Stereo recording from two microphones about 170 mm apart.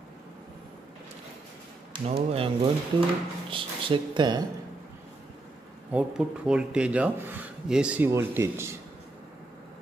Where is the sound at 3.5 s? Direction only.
30° right (ahead or behind).